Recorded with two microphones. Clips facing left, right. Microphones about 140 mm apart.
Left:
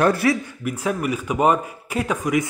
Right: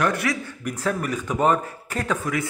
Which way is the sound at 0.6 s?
10° left (ahead or behind).